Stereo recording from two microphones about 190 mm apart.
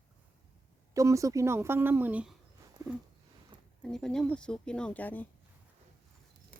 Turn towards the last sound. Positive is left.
turn(degrees=10)  # may be behind; listen again after turning